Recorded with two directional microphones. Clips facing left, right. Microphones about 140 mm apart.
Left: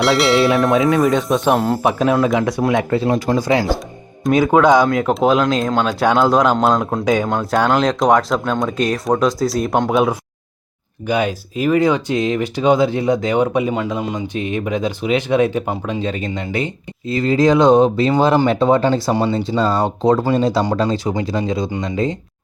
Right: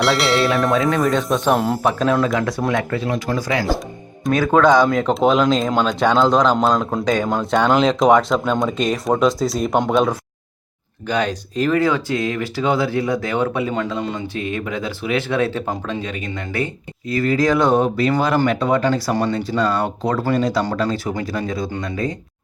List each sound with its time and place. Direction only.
0.0 s speech: centre (ahead or behind)
2.2 s speech: 20° left (ahead or behind)
4.8 s speech: centre (ahead or behind)
11.0 s speech: 10° left (ahead or behind)
16.0 s speech: 30° left (ahead or behind)
16.3 s speech: 20° left (ahead or behind); by 20.1 s 35° left (ahead or behind)
20.1 s speech: 20° left (ahead or behind)